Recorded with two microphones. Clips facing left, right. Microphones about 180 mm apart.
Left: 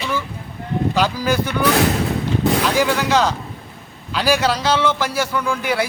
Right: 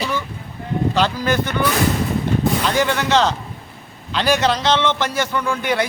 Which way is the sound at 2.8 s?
10° left (ahead or behind).